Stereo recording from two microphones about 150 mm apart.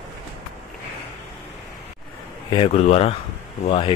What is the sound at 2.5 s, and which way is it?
Speech, 40° left (ahead or behind).